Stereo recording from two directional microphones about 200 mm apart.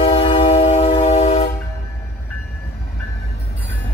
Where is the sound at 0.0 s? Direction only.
25° left (ahead or behind).